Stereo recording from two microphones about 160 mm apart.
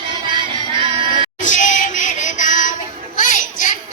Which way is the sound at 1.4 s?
50° left (ahead or behind).